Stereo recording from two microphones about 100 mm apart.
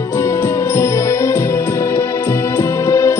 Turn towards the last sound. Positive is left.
turn(degrees=30)  # may be behind; listen again after turning